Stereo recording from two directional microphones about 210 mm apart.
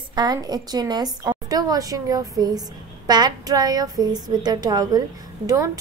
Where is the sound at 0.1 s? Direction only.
20° right (ahead or behind).